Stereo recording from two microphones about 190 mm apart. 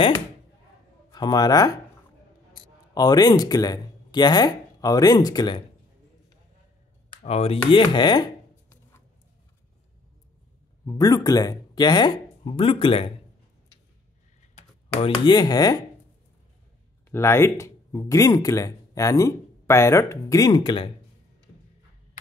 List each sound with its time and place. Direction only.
1.1 s speech: 20° left (ahead or behind)
2.9 s speech: 20° left (ahead or behind)
7.2 s speech: 30° left (ahead or behind)
10.9 s speech: 20° left (ahead or behind)
15.0 s speech: 25° left (ahead or behind)
17.1 s speech: 15° left (ahead or behind)